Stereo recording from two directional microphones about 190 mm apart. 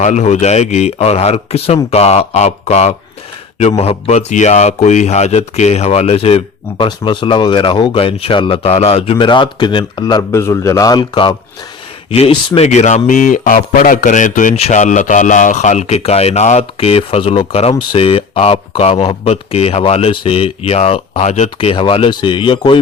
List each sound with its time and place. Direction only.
0.0 s a man's voice: 35° left (ahead or behind)